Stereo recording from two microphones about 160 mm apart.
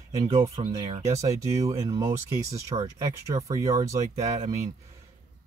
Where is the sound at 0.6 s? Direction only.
35° right (ahead or behind).